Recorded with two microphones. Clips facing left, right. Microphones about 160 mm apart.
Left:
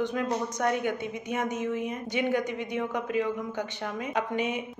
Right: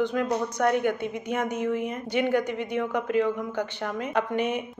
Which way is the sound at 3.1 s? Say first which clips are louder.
Right 5 dB; 50° right (ahead or behind).